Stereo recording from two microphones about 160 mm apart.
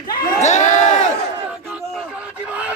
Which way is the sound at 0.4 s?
45° left (ahead or behind).